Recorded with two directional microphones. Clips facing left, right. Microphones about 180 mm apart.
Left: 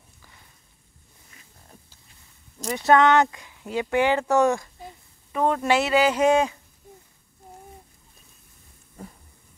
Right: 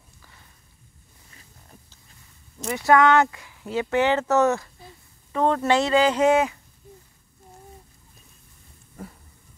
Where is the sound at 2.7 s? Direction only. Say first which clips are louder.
Even; 25° left (ahead or behind).